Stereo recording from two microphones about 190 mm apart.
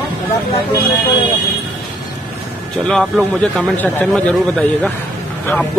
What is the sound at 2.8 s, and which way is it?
Speech, 5° left (ahead or behind).